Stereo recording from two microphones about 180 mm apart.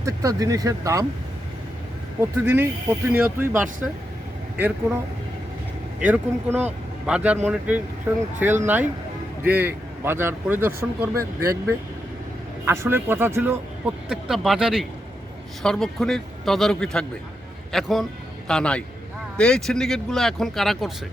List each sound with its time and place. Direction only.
0.0 s speech: 20° right (ahead or behind)
2.4 s speech: 10° right (ahead or behind)
6.1 s speech: 10° right (ahead or behind)
12.6 s a man's voice: 15° right (ahead or behind); by 20.9 s centre (ahead or behind)